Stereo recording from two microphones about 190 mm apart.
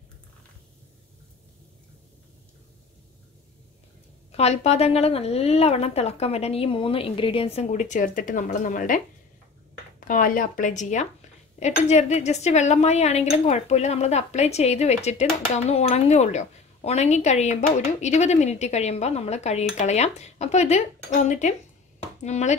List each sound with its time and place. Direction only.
4.3 s speech: 35° left (ahead or behind)